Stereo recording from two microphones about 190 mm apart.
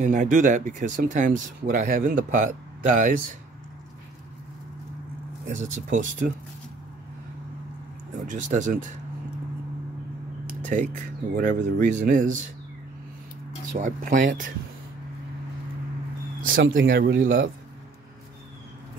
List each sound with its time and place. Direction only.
0.0 s speech: 40° right (ahead or behind)
5.9 s speech: 40° right (ahead or behind)
8.3 s speech: 40° right (ahead or behind)
10.6 s speech: 40° right (ahead or behind)
13.7 s speech: 40° right (ahead or behind)
16.4 s speech: 85° right
16.8 s speech: 55° right (ahead or behind)